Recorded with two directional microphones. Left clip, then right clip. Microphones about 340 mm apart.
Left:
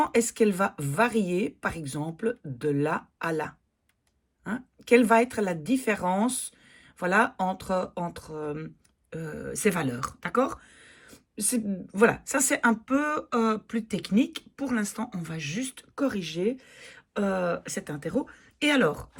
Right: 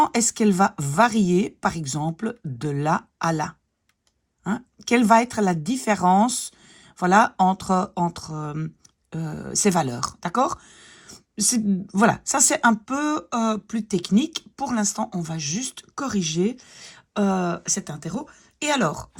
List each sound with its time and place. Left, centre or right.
0.2 s speech: centre
4.9 s speech: centre